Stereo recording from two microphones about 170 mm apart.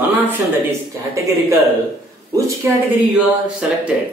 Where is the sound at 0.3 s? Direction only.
15° right (ahead or behind).